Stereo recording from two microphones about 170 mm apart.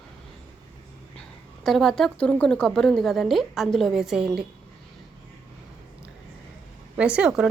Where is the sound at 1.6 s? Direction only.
Centre (ahead or behind).